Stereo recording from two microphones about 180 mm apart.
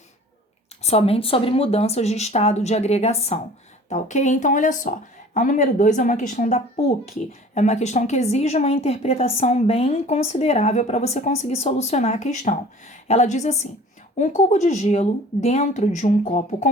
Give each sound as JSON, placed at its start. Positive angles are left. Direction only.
{"t": 0.8, "sound": "a woman's voice", "side_deg": 35}